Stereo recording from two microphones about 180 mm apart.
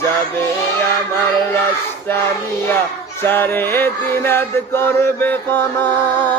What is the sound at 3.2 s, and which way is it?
Male singing, 10° left (ahead or behind).